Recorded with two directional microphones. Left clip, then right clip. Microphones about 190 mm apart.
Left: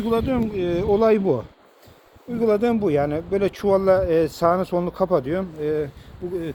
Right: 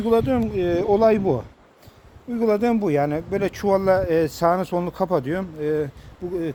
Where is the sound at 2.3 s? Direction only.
60° right (ahead or behind).